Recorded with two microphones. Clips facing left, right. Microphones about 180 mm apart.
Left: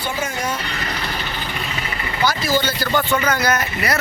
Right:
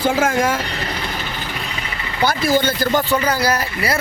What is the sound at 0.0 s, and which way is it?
Speech, 90° right.